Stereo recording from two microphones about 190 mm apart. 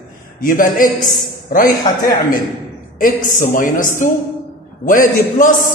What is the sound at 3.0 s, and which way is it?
A man's voice, 45° left (ahead or behind).